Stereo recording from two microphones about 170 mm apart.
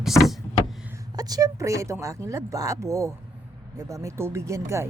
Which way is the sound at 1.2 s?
20° right (ahead or behind).